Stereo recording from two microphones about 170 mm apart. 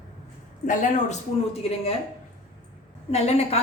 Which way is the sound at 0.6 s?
45° left (ahead or behind).